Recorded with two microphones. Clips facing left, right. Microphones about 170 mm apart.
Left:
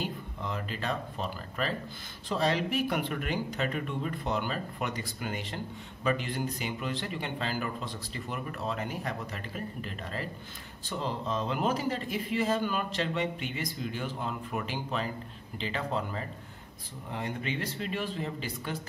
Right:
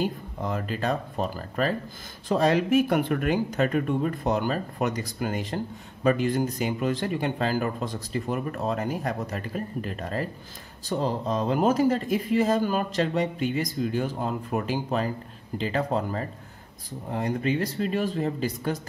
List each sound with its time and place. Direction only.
0.0 s speech: 45° right (ahead or behind)